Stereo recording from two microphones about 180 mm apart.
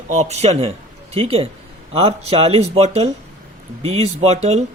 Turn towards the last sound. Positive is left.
turn(degrees=-35)  # may be behind; listen again after turning